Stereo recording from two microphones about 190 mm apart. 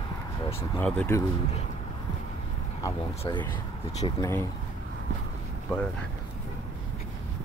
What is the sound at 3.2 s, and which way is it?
Speech, 25° left (ahead or behind).